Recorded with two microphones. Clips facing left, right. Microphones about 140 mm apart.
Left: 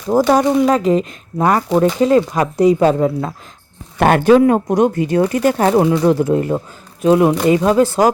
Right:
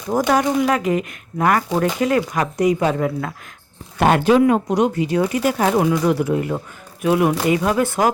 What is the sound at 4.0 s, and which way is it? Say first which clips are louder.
Speech: left 4 dB; 50° left (ahead or behind).